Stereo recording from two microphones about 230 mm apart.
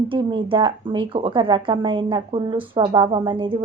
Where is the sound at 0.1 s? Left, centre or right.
Right.